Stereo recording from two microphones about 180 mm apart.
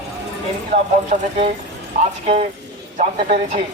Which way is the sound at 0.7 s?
50° right (ahead or behind).